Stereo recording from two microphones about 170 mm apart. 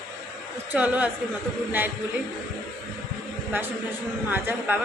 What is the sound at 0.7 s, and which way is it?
Speech, 10° right (ahead or behind).